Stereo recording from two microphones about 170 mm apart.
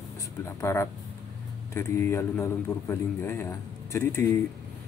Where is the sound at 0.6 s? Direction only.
15° left (ahead or behind).